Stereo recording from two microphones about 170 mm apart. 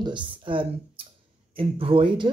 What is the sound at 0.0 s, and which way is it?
Speech, 30° right (ahead or behind).